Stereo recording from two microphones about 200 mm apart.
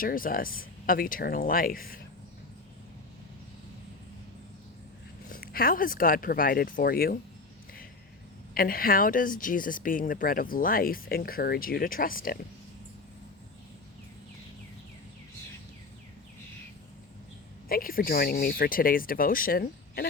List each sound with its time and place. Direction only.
0.0 s speech: 45° left (ahead or behind)
5.3 s speech: 50° left (ahead or behind)
8.5 s speech: 45° left (ahead or behind)
17.7 s speech: 45° left (ahead or behind)